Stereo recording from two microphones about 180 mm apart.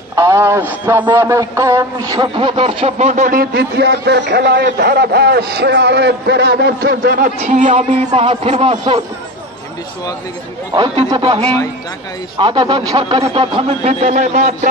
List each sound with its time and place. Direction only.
0.1 s a man's voice: 15° right (ahead or behind); by 7.3 s 55° right (ahead or behind)
7.3 s a man's voice: 40° right (ahead or behind)
11.1 s a man's voice: 30° right (ahead or behind)